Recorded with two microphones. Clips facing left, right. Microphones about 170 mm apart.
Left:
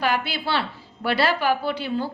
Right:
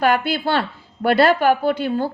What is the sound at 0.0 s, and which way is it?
Speech, 50° right (ahead or behind).